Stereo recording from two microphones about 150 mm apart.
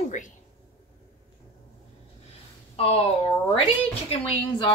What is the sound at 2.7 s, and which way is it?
Speech, 40° left (ahead or behind).